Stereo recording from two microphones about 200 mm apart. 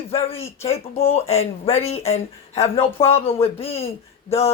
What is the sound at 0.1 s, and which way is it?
Speech, 30° left (ahead or behind).